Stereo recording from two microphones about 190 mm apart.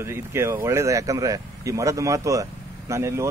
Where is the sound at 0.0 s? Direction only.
15° right (ahead or behind).